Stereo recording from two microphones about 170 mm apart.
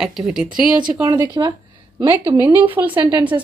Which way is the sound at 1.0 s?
20° right (ahead or behind).